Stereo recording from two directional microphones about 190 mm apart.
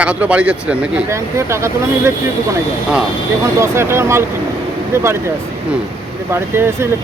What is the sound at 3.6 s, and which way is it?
Speech, 15° right (ahead or behind).